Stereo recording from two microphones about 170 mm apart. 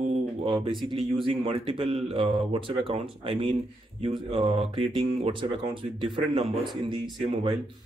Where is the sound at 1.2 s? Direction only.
35° right (ahead or behind).